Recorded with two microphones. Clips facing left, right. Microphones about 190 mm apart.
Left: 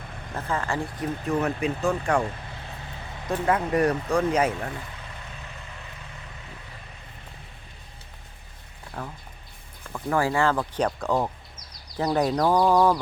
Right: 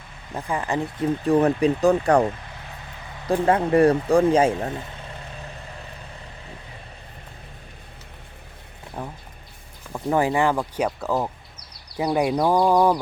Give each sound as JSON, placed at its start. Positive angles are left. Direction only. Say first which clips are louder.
{"t": 0.3, "sound": "speech", "louder": "right 3 dB", "side_deg": -15}
{"t": 1.3, "sound": "speech", "louder": "right 7 dB", "side_deg": -35}
{"t": 3.4, "sound": "speech", "louder": "right 5 dB", "side_deg": -30}
{"t": 9.0, "sound": "speech", "louder": "right 3 dB", "side_deg": -20}